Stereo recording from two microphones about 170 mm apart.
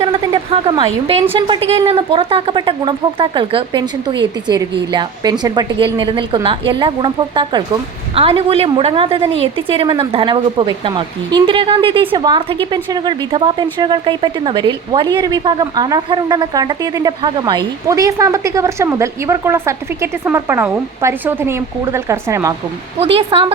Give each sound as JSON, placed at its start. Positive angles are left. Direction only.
{"t": 0.0, "sound": "a woman's voice", "side_deg": -35}
{"t": 23.0, "sound": "a woman's voice", "side_deg": -35}